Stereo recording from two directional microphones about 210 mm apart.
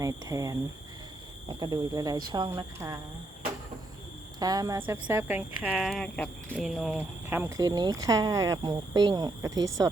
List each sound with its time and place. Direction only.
0.0 s speech: 15° right (ahead or behind)
4.4 s speech: 20° right (ahead or behind)